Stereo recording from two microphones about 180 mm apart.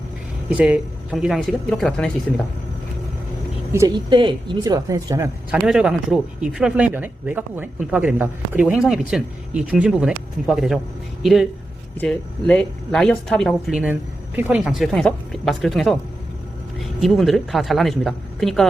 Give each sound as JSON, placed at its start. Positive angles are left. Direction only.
{"t": 0.5, "sound": "speech", "side_deg": -5}
{"t": 3.7, "sound": "speech", "side_deg": -20}
{"t": 5.5, "sound": "speech", "side_deg": -5}
{"t": 17.0, "sound": "speech", "side_deg": 0}